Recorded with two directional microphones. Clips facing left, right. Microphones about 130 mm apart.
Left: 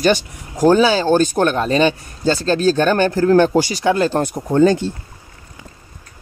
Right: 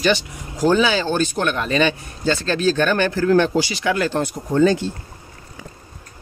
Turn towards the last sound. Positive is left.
turn(degrees=45)  # may be behind; listen again after turning